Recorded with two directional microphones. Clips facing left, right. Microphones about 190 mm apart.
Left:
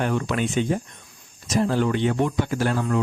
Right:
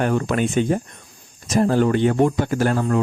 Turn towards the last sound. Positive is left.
turn(degrees=-45)  # may be behind; listen again after turning